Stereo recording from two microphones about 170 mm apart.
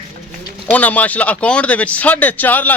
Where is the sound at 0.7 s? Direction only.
10° left (ahead or behind).